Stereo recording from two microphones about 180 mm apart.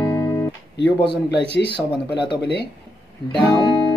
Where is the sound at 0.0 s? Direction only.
15° left (ahead or behind).